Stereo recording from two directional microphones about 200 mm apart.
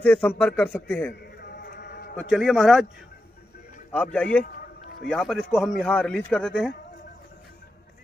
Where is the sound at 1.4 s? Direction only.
55° left (ahead or behind).